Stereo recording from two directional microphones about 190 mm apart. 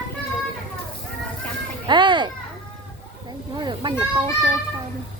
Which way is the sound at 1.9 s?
25° right (ahead or behind).